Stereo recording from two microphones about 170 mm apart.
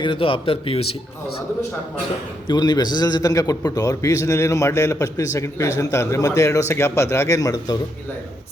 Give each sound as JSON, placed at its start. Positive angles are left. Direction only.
{"t": 0.0, "sound": "speech", "side_deg": 30}
{"t": 2.5, "sound": "a man's voice", "side_deg": 25}